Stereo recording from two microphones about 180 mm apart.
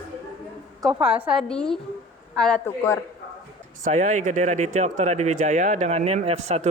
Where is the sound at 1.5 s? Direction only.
5° left (ahead or behind).